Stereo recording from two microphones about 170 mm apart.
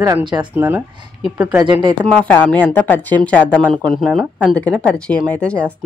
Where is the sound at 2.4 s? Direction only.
5° left (ahead or behind).